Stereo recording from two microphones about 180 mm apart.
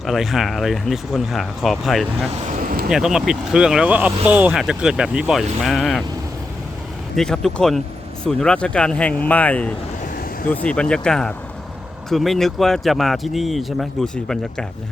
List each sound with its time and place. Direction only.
0.0 s speech: centre (ahead or behind)
7.2 s speech: 5° left (ahead or behind)